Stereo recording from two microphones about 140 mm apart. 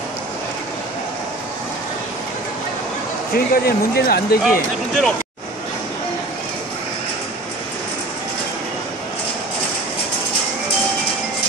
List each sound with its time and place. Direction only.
3.3 s speech: 90° left
4.4 s speech: centre (ahead or behind)